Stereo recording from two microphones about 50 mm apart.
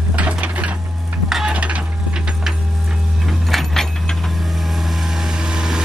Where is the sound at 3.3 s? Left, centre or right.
Centre.